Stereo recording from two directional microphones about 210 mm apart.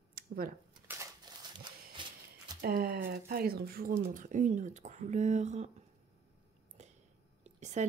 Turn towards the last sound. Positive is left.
turn(degrees=-35)  # may be behind; listen again after turning